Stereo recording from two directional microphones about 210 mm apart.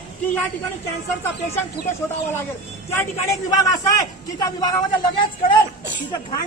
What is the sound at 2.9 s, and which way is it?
A man's voice, 15° left (ahead or behind).